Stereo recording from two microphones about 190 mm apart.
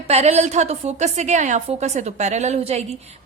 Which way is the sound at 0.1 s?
35° right (ahead or behind).